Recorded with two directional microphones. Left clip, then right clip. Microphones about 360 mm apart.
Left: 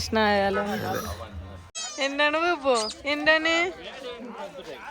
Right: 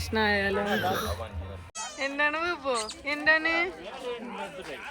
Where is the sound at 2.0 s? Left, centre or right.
Centre.